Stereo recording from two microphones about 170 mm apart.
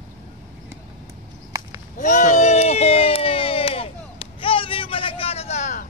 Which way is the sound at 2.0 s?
45° left (ahead or behind).